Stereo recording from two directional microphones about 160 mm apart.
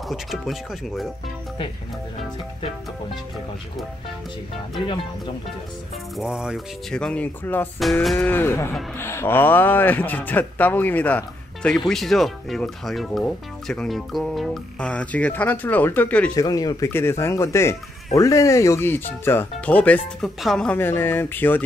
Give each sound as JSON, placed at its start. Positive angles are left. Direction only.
{"t": 0.1, "sound": "speech", "side_deg": 0}
{"t": 4.8, "sound": "speech", "side_deg": 30}
{"t": 6.1, "sound": "speech", "side_deg": -5}
{"t": 7.8, "sound": "speech", "side_deg": 0}
{"t": 8.3, "sound": "speech", "side_deg": 15}
{"t": 16.3, "sound": "speech", "side_deg": 25}